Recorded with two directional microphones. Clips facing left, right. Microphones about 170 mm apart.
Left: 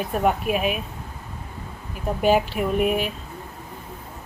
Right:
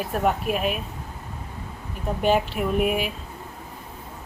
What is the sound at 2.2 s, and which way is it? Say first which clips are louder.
Speech: left 2 dB; centre (ahead or behind).